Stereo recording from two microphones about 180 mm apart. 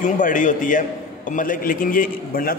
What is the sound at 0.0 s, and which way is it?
A man's voice, 45° left (ahead or behind).